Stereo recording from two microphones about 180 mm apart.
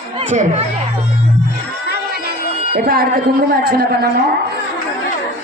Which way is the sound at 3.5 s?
55° right (ahead or behind).